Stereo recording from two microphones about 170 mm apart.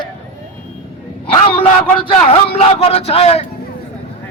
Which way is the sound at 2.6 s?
35° left (ahead or behind).